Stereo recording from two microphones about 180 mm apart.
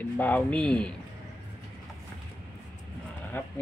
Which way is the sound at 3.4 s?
10° left (ahead or behind).